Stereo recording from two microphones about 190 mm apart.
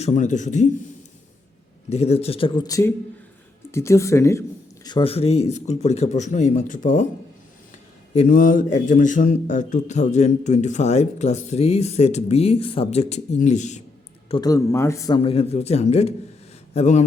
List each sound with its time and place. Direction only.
0.0 s a man's voice: 40° left (ahead or behind)
1.9 s a man's voice: 35° left (ahead or behind)
8.1 s a man's voice: 45° left (ahead or behind)
14.3 s speech: 25° left (ahead or behind)
15.2 s a man's voice: 30° left (ahead or behind)